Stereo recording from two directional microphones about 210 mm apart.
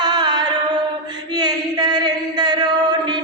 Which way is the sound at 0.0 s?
20° right (ahead or behind).